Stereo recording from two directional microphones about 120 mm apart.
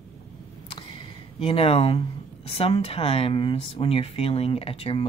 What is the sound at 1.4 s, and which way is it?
Speech, 55° left (ahead or behind).